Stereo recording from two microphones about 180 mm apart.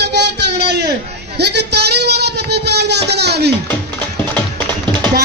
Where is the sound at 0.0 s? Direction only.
70° right (ahead or behind).